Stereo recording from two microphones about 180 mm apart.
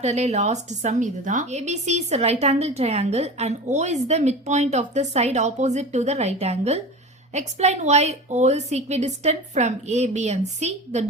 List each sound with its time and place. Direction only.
0.0 s a woman's voice: 40° right (ahead or behind)